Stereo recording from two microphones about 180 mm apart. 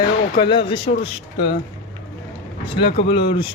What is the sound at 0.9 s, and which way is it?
Speech, 35° left (ahead or behind).